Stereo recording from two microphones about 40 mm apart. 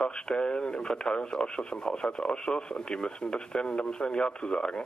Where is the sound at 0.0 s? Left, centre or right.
Left.